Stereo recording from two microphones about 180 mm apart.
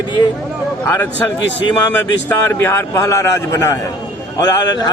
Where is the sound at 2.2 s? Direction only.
15° left (ahead or behind).